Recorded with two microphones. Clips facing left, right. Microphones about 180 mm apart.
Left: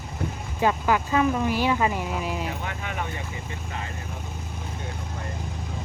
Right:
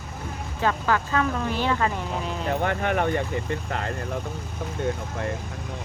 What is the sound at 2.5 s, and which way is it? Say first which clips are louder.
Speech: right 8 dB; 55° right (ahead or behind).